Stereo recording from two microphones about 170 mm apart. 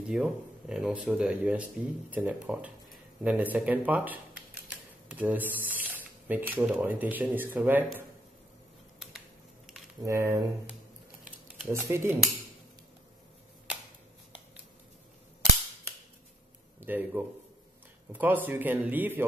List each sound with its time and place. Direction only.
0.0 s speech: 5° right (ahead or behind)
4.6 s a sound: 10° right (ahead or behind)
6.2 s speech: 10° right (ahead or behind)
10.0 s speech: 15° right (ahead or behind)
11.2 s a sound: 10° right (ahead or behind)
16.8 s speech: 10° right (ahead or behind)